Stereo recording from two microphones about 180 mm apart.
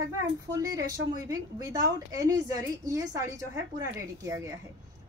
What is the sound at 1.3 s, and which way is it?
A woman's voice, 20° right (ahead or behind).